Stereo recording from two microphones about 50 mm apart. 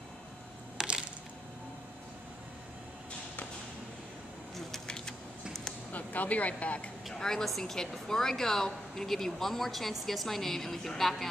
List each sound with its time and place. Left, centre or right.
0.7 s crushing: centre
4.6 s a sound: centre
5.9 s speech: left
7.2 s a woman's voice: centre